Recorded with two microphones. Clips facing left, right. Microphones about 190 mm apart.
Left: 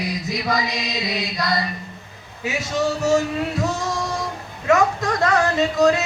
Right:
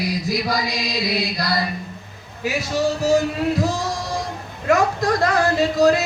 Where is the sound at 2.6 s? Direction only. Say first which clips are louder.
Right 1 dB; 35° right (ahead or behind).